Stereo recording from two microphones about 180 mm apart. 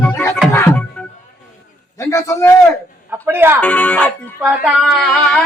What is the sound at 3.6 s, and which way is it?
Speech, 10° left (ahead or behind).